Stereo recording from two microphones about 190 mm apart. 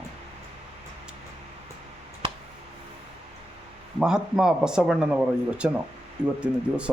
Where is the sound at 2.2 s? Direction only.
25° right (ahead or behind).